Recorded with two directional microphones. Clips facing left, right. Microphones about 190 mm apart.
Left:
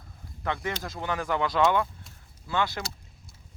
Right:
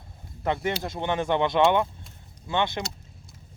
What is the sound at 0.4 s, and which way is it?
Speech, 30° right (ahead or behind).